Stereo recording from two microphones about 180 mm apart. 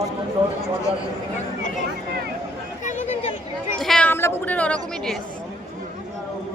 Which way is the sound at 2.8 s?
40° left (ahead or behind).